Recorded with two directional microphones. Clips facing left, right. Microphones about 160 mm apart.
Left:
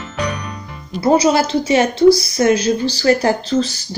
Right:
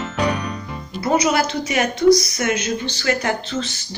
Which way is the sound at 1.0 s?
30° left (ahead or behind).